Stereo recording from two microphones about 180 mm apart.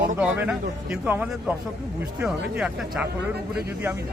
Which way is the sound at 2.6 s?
5° right (ahead or behind).